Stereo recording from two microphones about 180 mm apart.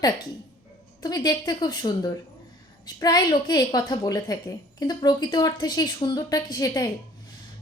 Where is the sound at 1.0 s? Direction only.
20° left (ahead or behind).